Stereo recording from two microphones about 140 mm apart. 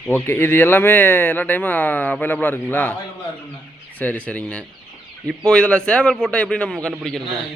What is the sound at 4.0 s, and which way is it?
Speech, 10° left (ahead or behind).